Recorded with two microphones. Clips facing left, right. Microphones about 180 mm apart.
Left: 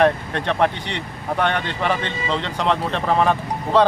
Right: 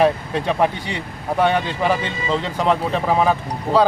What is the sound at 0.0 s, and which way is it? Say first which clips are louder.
Speech: right 1 dB; 5° right (ahead or behind).